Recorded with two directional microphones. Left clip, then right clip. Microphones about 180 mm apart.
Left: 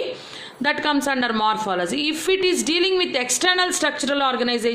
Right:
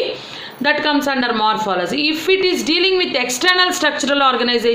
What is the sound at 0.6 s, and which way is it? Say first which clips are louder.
A woman's voice: right 5 dB; 35° left (ahead or behind).